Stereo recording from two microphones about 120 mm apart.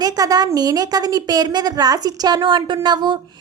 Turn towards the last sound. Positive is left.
turn(degrees=-40)  # may be behind; listen again after turning